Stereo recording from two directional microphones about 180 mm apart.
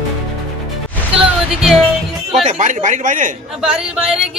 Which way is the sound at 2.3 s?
40° right (ahead or behind).